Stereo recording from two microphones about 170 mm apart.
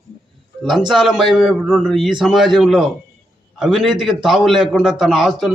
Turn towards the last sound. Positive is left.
turn(degrees=0)  # may be behind; listen again after turning